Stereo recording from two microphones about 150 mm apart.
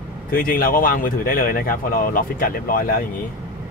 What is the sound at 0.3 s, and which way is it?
Speech, 70° left (ahead or behind).